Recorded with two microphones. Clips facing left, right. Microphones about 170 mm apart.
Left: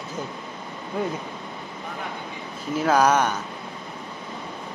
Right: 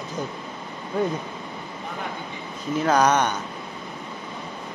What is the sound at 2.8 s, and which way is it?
Speech, 5° left (ahead or behind).